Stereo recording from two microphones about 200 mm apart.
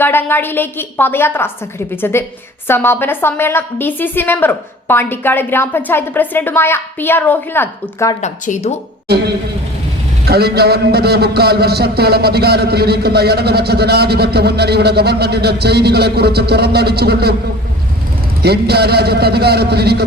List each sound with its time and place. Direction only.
0.0 s a woman's voice: 10° left (ahead or behind)
8.2 s speech: 35° left (ahead or behind)
9.0 s a man's voice: 55° right (ahead or behind)
18.4 s a man's voice: 55° right (ahead or behind)